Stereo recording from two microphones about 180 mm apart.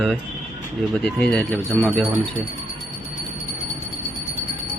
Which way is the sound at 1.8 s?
5° left (ahead or behind).